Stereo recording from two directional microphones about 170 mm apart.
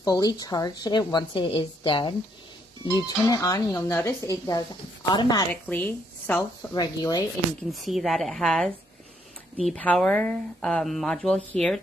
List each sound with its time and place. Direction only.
0.0 s a woman's voice: 25° left (ahead or behind)
3.2 s a woman's voice: 20° left (ahead or behind)
5.5 s a woman's voice: 10° left (ahead or behind)
6.7 s a woman's voice: 25° left (ahead or behind)
7.7 s speech: centre (ahead or behind)